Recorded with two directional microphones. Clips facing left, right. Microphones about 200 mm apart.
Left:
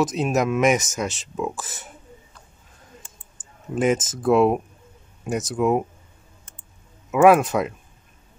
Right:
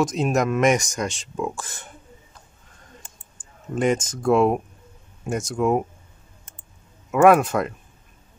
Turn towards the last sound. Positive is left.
turn(degrees=0)  # may be behind; listen again after turning